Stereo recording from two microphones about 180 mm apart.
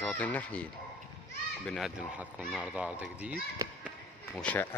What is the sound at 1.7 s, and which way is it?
Speech, 5° right (ahead or behind).